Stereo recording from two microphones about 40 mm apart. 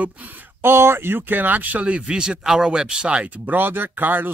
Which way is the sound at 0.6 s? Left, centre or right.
Right.